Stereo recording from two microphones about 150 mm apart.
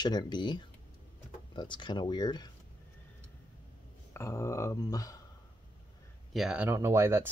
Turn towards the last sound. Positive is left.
turn(degrees=-15)  # may be behind; listen again after turning